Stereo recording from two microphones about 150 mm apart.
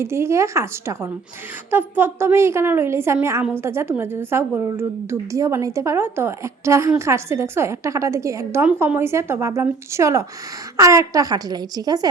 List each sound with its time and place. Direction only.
0.0 s a woman's voice: 20° right (ahead or behind)